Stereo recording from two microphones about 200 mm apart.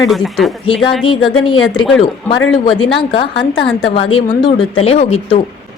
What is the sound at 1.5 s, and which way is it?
A woman's voice, 25° left (ahead or behind).